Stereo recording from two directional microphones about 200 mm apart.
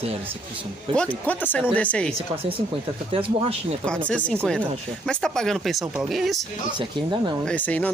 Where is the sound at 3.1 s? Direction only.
30° right (ahead or behind).